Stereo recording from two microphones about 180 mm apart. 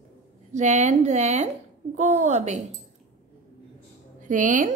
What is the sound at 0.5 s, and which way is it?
Speech, 40° right (ahead or behind).